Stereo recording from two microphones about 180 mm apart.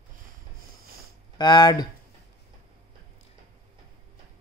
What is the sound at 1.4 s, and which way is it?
Speech, 25° left (ahead or behind).